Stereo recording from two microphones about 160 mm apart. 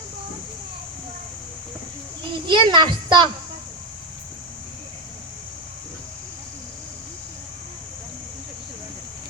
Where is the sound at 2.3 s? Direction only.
30° right (ahead or behind).